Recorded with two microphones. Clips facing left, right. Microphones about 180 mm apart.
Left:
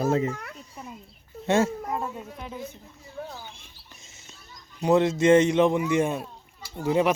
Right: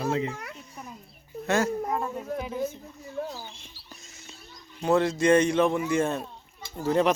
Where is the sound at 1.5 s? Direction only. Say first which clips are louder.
Left 3 dB; 25° left (ahead or behind).